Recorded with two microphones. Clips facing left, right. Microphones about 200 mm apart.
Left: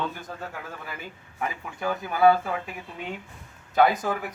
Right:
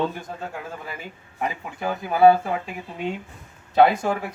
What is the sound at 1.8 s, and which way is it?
Speech, 25° right (ahead or behind).